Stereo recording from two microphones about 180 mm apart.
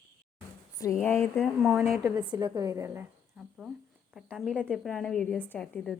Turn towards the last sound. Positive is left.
turn(degrees=5)  # may be behind; listen again after turning